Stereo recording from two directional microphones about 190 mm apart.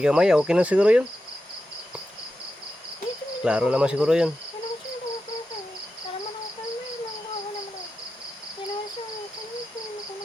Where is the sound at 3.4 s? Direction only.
5° right (ahead or behind).